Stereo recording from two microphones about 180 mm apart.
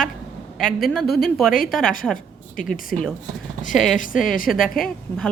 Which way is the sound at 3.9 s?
45° left (ahead or behind).